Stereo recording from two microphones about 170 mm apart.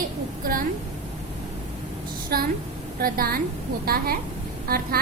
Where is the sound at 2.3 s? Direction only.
60° right (ahead or behind).